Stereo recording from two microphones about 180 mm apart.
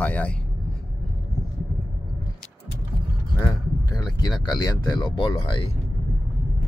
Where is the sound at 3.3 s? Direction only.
20° left (ahead or behind).